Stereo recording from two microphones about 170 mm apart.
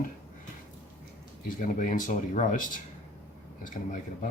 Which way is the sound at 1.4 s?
50° left (ahead or behind).